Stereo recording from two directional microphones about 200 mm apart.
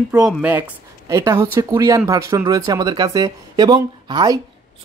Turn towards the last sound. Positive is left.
turn(degrees=-20)  # may be behind; listen again after turning